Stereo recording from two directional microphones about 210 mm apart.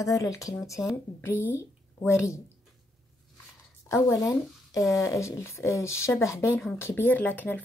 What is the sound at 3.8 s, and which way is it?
A woman's voice, 15° left (ahead or behind).